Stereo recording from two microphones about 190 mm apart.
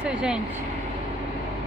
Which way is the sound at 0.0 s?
5° right (ahead or behind).